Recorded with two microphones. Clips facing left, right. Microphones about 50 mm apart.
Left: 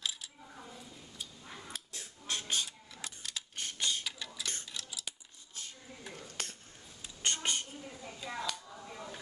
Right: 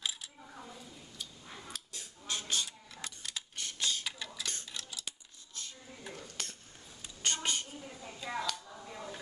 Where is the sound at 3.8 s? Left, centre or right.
Left.